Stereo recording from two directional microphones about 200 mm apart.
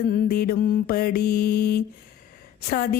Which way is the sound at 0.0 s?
50° left (ahead or behind).